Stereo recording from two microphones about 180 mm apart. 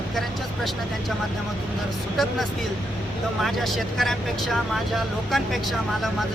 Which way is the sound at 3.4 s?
Centre (ahead or behind).